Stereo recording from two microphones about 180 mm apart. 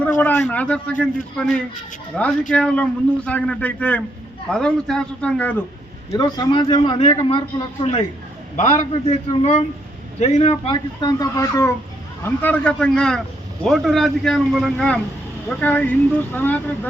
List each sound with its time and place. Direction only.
0.0 s a man's voice: 10° left (ahead or behind)
6.1 s speech: 20° left (ahead or behind)
8.5 s a man's voice: 40° left (ahead or behind); by 16.7 s 10° left (ahead or behind)